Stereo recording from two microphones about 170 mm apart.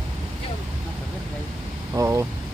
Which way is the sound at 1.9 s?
15° right (ahead or behind).